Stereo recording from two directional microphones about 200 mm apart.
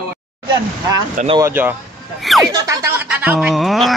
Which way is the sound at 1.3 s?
15° right (ahead or behind).